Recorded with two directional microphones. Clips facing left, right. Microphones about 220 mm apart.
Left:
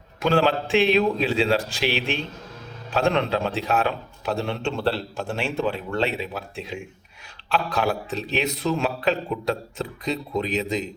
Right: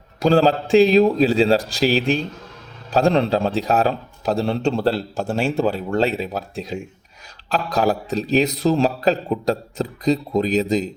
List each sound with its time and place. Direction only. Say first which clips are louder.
0.2 s a man's voice: right 5 dB; 35° right (ahead or behind)